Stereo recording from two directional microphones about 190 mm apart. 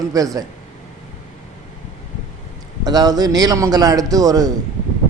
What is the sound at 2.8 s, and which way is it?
A man's voice, 20° right (ahead or behind).